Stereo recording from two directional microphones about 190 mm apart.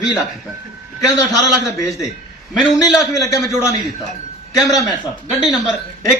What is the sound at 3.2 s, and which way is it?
Speech, 20° left (ahead or behind).